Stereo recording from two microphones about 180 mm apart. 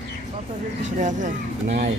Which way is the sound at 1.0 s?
45° right (ahead or behind).